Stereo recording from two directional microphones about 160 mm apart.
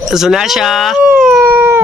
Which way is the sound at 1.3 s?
15° right (ahead or behind).